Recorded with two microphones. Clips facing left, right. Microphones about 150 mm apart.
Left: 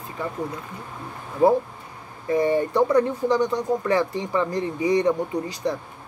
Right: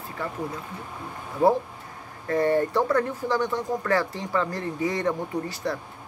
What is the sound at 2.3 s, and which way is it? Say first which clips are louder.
Speech: left 2 dB; 15° left (ahead or behind).